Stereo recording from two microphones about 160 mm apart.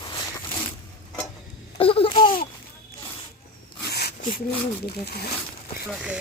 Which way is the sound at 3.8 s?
85° left.